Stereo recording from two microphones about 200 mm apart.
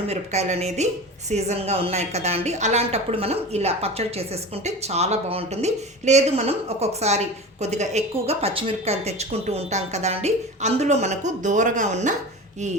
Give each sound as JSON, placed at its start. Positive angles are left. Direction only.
{"t": 0.1, "sound": "a woman's voice", "side_deg": -35}